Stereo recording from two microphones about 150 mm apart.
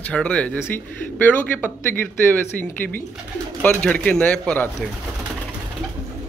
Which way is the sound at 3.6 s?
10° left (ahead or behind).